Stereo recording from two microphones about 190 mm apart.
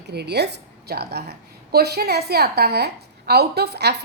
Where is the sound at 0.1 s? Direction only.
60° right (ahead or behind).